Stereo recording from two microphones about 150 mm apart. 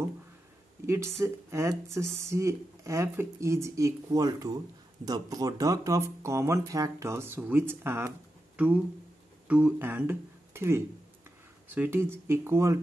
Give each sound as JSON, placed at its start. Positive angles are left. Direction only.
{"t": 0.8, "sound": "speech", "side_deg": -20}